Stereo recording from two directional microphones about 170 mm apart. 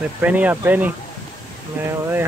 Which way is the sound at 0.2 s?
10° right (ahead or behind).